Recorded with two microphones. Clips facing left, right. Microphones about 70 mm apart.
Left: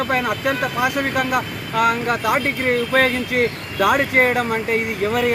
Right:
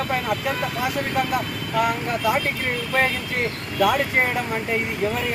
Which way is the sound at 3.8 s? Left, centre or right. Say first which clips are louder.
Left 4 dB; left.